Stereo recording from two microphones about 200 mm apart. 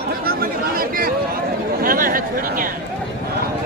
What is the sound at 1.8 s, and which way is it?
Speech, 45° right (ahead or behind).